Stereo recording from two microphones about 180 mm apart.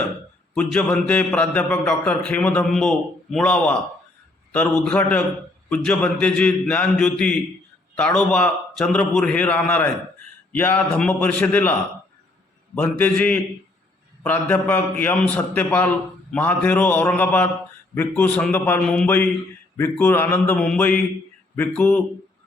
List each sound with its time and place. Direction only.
0.5 s a man's voice: 5° left (ahead or behind)
12.7 s a man's voice: 10° left (ahead or behind)